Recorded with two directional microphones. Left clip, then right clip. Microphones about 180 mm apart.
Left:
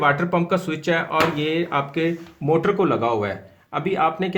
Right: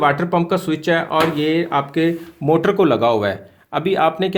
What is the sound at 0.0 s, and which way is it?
Speech, 35° right (ahead or behind).